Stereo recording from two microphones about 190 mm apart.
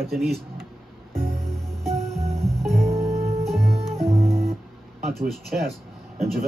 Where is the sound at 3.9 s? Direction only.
15° right (ahead or behind).